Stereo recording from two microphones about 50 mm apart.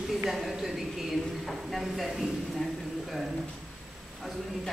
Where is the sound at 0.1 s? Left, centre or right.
Centre.